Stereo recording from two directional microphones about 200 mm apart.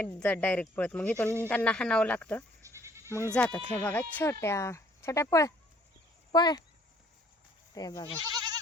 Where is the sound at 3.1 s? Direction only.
10° left (ahead or behind).